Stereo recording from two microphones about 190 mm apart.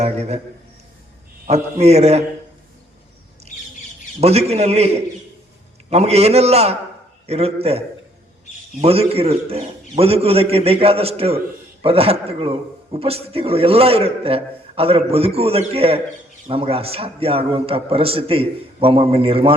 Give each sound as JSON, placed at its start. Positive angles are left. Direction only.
{"t": 0.0, "sound": "a man's voice", "side_deg": -35}
{"t": 1.5, "sound": "a man's voice", "side_deg": -35}
{"t": 3.5, "sound": "bird", "side_deg": 40}
{"t": 4.2, "sound": "a man's voice", "side_deg": -35}